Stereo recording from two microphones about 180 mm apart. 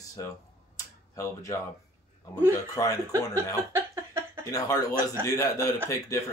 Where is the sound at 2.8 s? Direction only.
15° left (ahead or behind).